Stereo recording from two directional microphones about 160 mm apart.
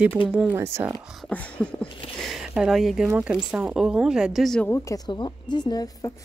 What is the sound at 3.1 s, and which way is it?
A woman's voice, 10° right (ahead or behind).